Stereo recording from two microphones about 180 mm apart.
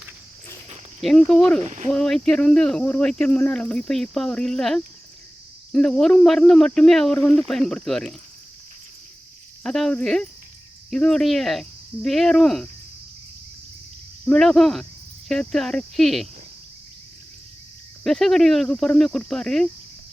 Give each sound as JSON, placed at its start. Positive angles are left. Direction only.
{"t": 1.3, "sound": "speech", "side_deg": 5}
{"t": 1.6, "sound": "speech", "side_deg": -40}
{"t": 1.9, "sound": "speech", "side_deg": 5}
{"t": 9.6, "sound": "speech", "side_deg": 0}
{"t": 14.3, "sound": "speech", "side_deg": 0}
{"t": 18.0, "sound": "speech", "side_deg": 0}